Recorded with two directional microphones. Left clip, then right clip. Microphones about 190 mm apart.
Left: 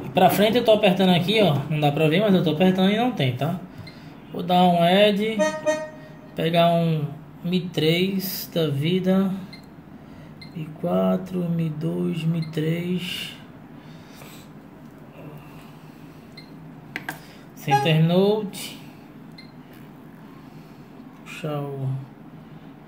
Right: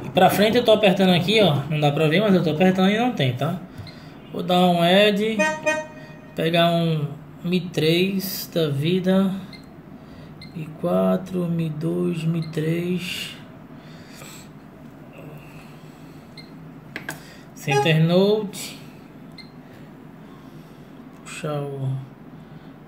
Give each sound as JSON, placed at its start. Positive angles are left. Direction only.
{"t": 0.0, "sound": "speech", "side_deg": 0}
{"t": 10.8, "sound": "speech", "side_deg": 0}
{"t": 17.6, "sound": "speech", "side_deg": 0}
{"t": 21.3, "sound": "speech", "side_deg": -5}